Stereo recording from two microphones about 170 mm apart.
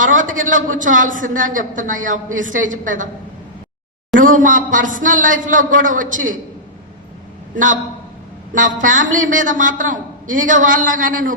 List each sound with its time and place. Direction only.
0.0 s a woman's voice: 50° right (ahead or behind)
4.2 s a woman's voice: 50° right (ahead or behind)
7.5 s a man's voice: 50° right (ahead or behind)
8.8 s a woman's voice: 50° right (ahead or behind)